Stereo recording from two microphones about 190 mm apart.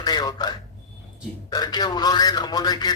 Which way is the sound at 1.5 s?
20° left (ahead or behind).